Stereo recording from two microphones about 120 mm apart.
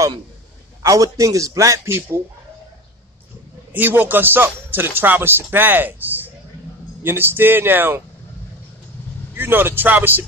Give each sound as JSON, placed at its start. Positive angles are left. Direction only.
{"t": 0.8, "sound": "a man's voice", "side_deg": -30}
{"t": 3.7, "sound": "speech", "side_deg": -15}
{"t": 9.3, "sound": "speech", "side_deg": -15}